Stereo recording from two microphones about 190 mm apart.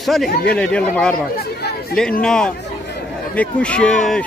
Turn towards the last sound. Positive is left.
turn(degrees=5)  # may be behind; listen again after turning